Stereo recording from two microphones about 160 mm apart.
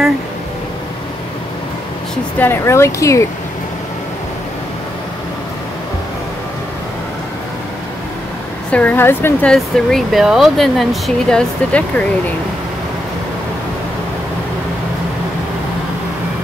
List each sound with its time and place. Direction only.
2.3 s speech: 15° left (ahead or behind)
8.7 s speech: 10° left (ahead or behind)